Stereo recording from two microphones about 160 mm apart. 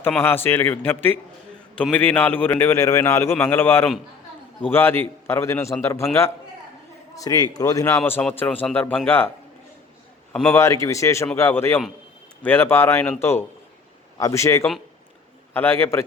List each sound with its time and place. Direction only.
0.2 s a man's voice: 15° left (ahead or behind)
7.2 s a man's voice: 25° left (ahead or behind)
10.3 s a man's voice: 15° left (ahead or behind)